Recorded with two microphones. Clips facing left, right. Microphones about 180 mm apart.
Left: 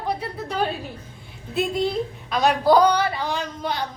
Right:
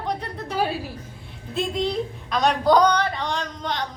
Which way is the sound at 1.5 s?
5° left (ahead or behind).